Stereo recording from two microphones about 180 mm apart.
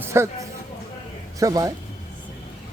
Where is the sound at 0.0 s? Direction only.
15° right (ahead or behind).